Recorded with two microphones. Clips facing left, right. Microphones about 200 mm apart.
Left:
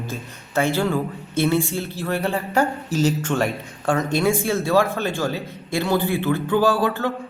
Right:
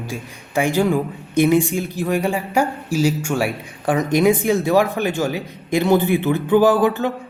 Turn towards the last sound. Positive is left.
turn(degrees=-20)  # may be behind; listen again after turning